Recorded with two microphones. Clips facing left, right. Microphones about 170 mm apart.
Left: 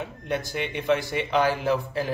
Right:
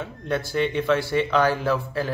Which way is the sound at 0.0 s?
15° left (ahead or behind).